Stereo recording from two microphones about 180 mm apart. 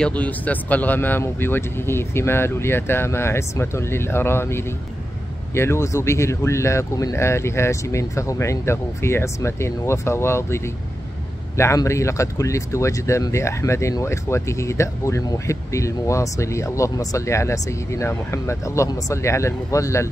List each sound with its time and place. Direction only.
0.0 s speech: 10° left (ahead or behind)